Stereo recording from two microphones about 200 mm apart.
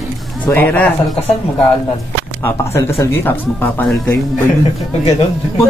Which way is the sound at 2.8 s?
15° left (ahead or behind).